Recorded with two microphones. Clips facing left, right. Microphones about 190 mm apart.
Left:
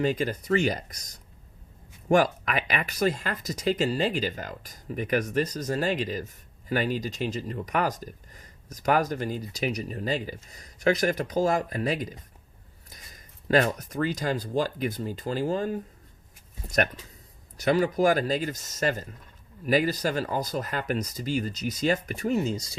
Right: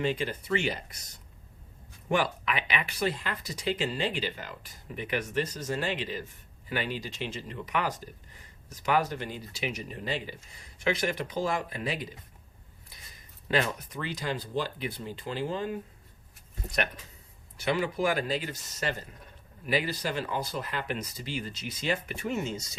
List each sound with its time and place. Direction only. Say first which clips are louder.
0.0 s speech: left 4 dB; 40° left (ahead or behind)
2.0 s speech: left 6 dB; 45° left (ahead or behind)
17.6 s speech: left 6 dB; 40° left (ahead or behind)